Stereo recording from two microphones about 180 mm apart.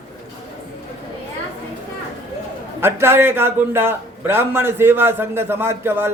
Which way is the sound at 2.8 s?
15° right (ahead or behind).